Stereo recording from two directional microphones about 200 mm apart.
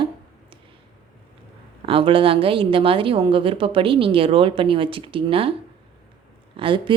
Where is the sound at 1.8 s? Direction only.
25° right (ahead or behind).